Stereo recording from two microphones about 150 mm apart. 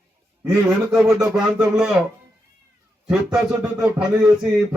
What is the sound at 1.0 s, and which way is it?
Speech, 20° right (ahead or behind).